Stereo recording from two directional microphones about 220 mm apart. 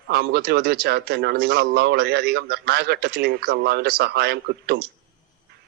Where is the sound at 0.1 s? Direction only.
45° right (ahead or behind).